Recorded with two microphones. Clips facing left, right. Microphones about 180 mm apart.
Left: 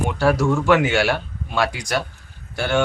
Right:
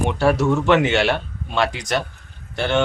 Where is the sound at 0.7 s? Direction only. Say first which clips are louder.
Even; 5° left (ahead or behind).